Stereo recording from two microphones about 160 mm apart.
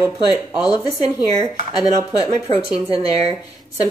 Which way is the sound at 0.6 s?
25° left (ahead or behind).